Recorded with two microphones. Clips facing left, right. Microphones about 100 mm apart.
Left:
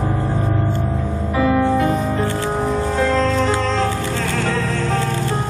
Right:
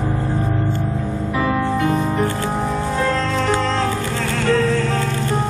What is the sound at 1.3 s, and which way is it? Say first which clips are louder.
Music: left 4 dB; 25° left (ahead or behind).